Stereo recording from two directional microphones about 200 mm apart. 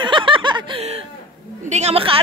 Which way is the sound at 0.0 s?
25° right (ahead or behind).